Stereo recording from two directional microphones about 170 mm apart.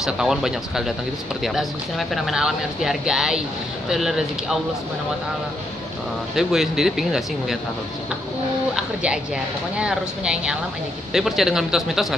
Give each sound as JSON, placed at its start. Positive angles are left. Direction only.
{"t": 0.0, "sound": "speech", "side_deg": -5}
{"t": 6.3, "sound": "speech", "side_deg": 0}
{"t": 8.7, "sound": "speech", "side_deg": -5}